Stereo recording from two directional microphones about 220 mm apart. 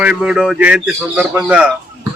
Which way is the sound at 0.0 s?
5° right (ahead or behind).